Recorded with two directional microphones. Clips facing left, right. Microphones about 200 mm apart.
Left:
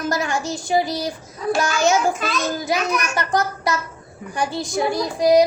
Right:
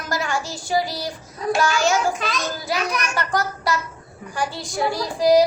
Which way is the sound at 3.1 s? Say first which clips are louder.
Left 2 dB; 20° left (ahead or behind).